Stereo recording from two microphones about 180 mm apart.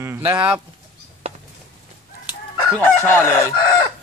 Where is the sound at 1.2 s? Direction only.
35° right (ahead or behind).